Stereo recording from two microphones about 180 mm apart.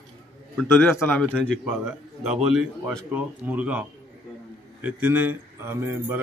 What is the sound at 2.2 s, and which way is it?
Speech, centre (ahead or behind).